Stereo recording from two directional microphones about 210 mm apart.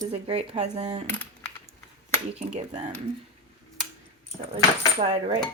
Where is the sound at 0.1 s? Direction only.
30° right (ahead or behind).